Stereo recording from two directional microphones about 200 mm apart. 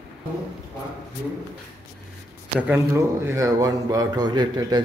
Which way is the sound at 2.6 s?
10° right (ahead or behind).